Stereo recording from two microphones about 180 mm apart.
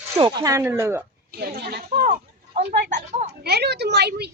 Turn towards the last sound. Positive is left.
turn(degrees=-65)  # may be behind; listen again after turning